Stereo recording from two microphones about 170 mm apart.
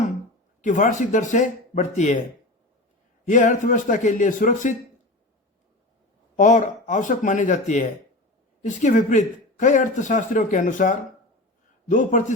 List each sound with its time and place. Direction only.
0.6 s speech: 50° left (ahead or behind)
3.2 s speech: 50° left (ahead or behind)
6.3 s speech: 45° left (ahead or behind)